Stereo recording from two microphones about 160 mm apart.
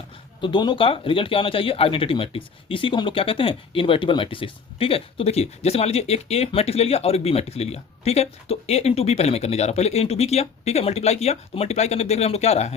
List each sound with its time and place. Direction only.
0.4 s speech: 30° left (ahead or behind)